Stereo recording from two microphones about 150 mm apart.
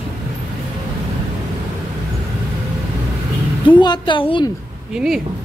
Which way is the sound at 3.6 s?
30° left (ahead or behind).